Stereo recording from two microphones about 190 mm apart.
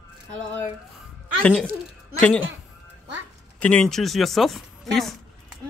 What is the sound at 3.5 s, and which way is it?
Speech, 5° left (ahead or behind).